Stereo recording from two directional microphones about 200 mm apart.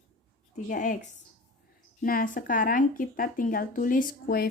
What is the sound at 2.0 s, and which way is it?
Speech, 45° left (ahead or behind).